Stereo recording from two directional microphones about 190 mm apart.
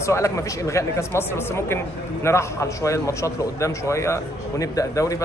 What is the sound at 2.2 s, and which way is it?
A man's voice, 15° left (ahead or behind).